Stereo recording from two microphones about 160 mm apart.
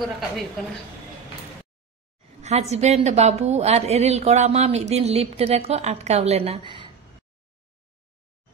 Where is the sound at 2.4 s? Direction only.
40° right (ahead or behind).